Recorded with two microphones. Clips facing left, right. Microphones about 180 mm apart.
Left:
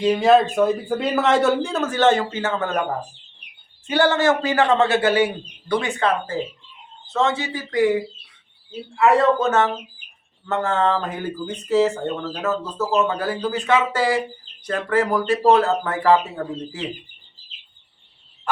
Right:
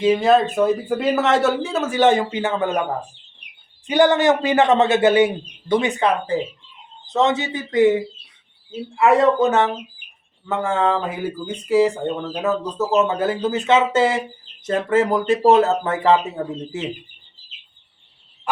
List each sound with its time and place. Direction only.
0.0 s speech: centre (ahead or behind)
3.8 s a man's voice: 15° right (ahead or behind)